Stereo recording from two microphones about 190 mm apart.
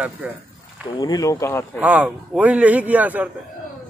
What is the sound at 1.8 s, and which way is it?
A man's voice, 5° right (ahead or behind).